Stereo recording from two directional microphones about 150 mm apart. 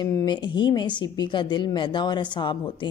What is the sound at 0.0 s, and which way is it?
A woman's voice, 25° left (ahead or behind).